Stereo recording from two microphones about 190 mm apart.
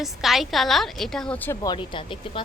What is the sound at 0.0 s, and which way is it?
A woman's voice, centre (ahead or behind).